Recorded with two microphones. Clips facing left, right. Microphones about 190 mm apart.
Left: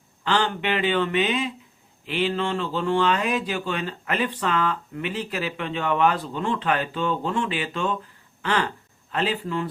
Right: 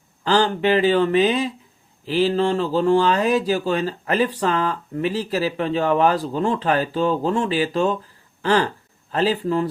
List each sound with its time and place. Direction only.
0.3 s speech: 35° right (ahead or behind)